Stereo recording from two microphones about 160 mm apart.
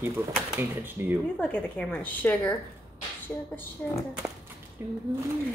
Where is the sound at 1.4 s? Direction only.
10° left (ahead or behind).